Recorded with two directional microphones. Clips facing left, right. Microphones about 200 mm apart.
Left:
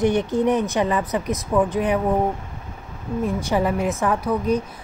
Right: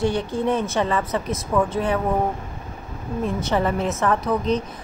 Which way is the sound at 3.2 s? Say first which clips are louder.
Left 1 dB; 15° left (ahead or behind).